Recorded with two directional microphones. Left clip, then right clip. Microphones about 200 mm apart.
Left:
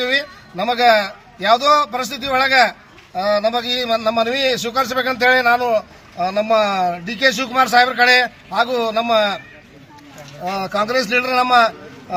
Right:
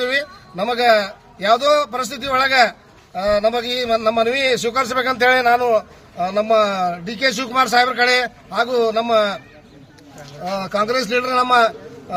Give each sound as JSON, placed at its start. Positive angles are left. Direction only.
{"t": 0.0, "sound": "a man's voice", "side_deg": -30}
{"t": 10.6, "sound": "speech", "side_deg": -25}